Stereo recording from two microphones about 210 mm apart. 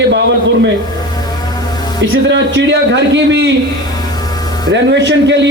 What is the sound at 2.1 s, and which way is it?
A man's voice, 60° right (ahead or behind).